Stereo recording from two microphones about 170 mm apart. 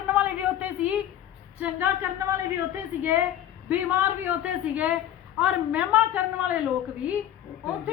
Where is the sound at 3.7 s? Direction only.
10° right (ahead or behind).